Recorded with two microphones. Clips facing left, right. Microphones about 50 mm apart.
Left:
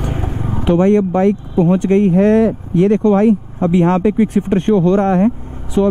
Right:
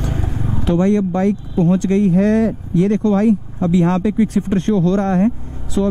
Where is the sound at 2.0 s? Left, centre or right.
Left.